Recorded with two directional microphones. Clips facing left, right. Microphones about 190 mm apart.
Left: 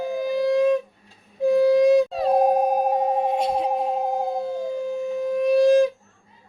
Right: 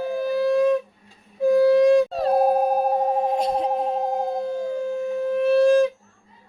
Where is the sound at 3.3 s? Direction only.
5° left (ahead or behind).